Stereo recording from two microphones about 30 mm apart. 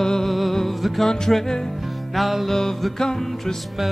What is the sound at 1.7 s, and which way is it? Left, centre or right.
Music, centre.